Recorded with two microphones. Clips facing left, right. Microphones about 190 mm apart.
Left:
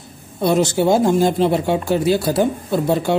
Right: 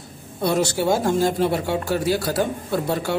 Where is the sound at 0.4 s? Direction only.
20° left (ahead or behind).